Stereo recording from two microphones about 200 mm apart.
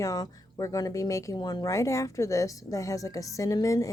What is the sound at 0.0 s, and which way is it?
Speech, 15° left (ahead or behind).